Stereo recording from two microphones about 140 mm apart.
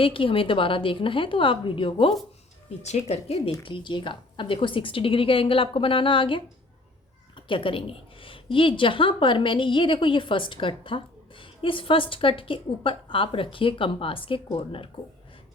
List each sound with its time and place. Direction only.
0.0 s a woman's voice: 40° left (ahead or behind)
3.6 s a woman's voice: 35° left (ahead or behind)